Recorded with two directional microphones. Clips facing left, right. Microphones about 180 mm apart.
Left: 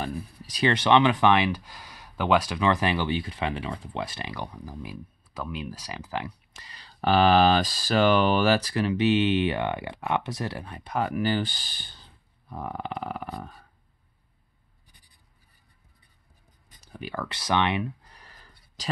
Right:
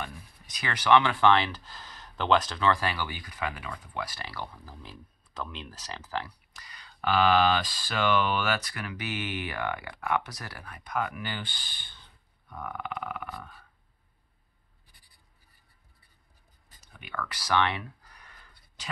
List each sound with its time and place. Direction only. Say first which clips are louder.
0.0 s speech: left 8 dB; 30° left (ahead or behind)
16.8 s speech: left 4 dB; 35° left (ahead or behind)
18.2 s a sound: left 2 dB; 35° left (ahead or behind)